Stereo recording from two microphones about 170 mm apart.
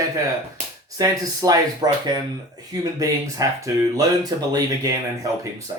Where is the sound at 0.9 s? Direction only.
20° right (ahead or behind).